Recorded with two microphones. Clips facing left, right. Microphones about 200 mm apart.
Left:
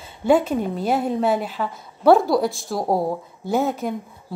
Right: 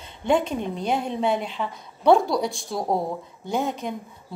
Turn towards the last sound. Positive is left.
turn(degrees=5)  # may be behind; listen again after turning